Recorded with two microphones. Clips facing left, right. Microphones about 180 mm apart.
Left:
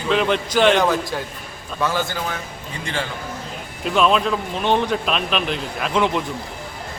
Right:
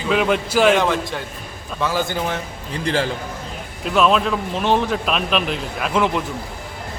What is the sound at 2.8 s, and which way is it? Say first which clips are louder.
Speech: right 6 dB; 35° right (ahead or behind).